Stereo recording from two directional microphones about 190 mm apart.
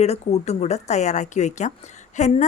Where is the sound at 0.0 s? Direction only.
35° left (ahead or behind).